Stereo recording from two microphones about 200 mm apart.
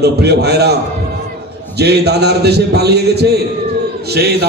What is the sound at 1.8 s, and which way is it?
A man's voice, 55° right (ahead or behind).